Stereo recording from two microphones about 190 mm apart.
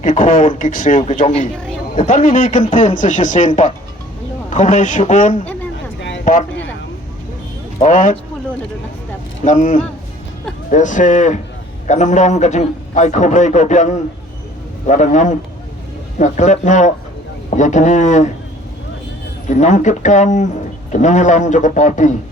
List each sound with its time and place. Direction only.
0.0 s a man's voice: 45° left (ahead or behind)
6.0 s a sound: 70° left (ahead or behind)
7.8 s a man's voice: 40° left (ahead or behind)
9.4 s a man's voice: 40° left (ahead or behind)
19.5 s a man's voice: 40° left (ahead or behind)